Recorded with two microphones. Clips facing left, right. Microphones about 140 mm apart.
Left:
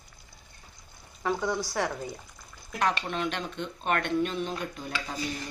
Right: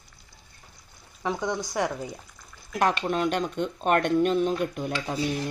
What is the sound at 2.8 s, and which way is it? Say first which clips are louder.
Speech: right 4 dB; 45° right (ahead or behind).